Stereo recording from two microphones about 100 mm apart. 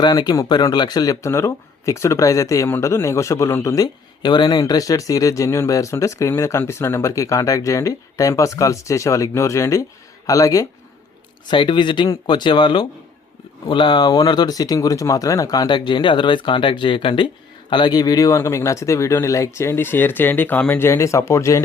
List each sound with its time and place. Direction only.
0.0 s speech: 45° left (ahead or behind)
1.3 s speech: 25° left (ahead or behind)
4.2 s speech: 45° left (ahead or behind)
11.4 s speech: 55° left (ahead or behind); by 21.6 s 30° left (ahead or behind)